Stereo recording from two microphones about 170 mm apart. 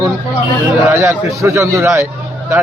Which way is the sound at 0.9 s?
15° right (ahead or behind).